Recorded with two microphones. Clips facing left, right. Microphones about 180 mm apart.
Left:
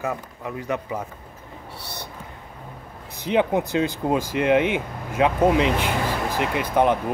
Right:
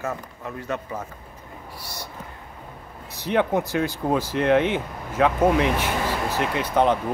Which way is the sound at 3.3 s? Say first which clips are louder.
Left 1 dB; 15° left (ahead or behind).